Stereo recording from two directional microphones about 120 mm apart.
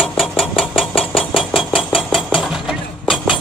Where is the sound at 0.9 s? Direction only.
50° left (ahead or behind).